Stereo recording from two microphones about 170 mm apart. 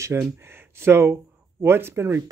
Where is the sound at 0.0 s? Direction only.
15° right (ahead or behind).